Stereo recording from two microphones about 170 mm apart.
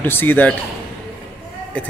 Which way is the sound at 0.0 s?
10° left (ahead or behind).